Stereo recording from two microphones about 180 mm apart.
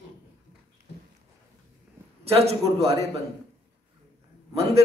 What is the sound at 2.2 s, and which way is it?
Speech, 35° right (ahead or behind).